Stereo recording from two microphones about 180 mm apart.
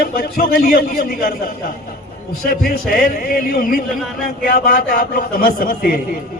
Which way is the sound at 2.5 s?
55° left (ahead or behind).